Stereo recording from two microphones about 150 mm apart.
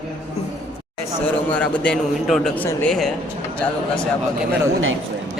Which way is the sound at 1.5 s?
10° left (ahead or behind).